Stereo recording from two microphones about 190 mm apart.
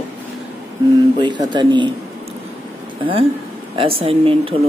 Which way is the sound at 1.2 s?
25° right (ahead or behind).